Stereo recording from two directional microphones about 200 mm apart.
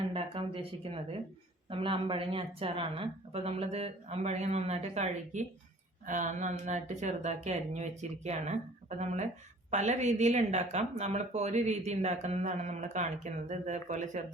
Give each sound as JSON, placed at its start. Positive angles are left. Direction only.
{"t": 0.1, "sound": "a woman's voice", "side_deg": -25}